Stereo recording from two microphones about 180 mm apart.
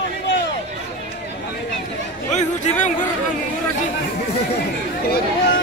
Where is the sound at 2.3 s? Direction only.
40° left (ahead or behind).